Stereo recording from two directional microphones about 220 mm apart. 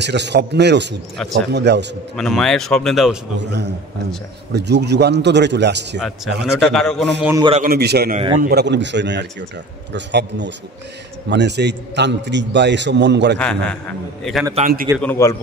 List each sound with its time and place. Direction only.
0.0 s a man's voice: 50° right (ahead or behind)
2.1 s speech: centre (ahead or behind)
3.3 s a man's voice: 50° right (ahead or behind)
5.9 s speech: centre (ahead or behind)
7.2 s a man's voice: 15° right (ahead or behind)
7.5 s a man's voice: 40° right (ahead or behind)
8.2 s a man's voice: 25° right (ahead or behind)
8.5 s a man's voice: 50° right (ahead or behind)
13.4 s a man's voice: 5° left (ahead or behind)